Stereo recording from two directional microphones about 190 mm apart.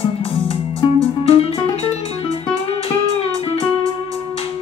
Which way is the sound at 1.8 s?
30° left (ahead or behind).